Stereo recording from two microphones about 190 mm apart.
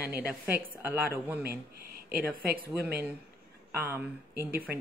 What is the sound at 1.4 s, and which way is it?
Speech, 55° right (ahead or behind).